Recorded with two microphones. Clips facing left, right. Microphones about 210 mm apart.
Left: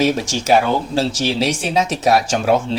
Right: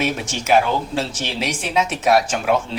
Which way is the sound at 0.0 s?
35° left (ahead or behind).